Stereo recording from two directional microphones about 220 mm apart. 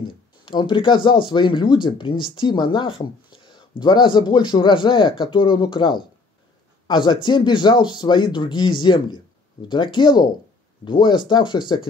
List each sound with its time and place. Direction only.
0.0 s speech: 20° left (ahead or behind)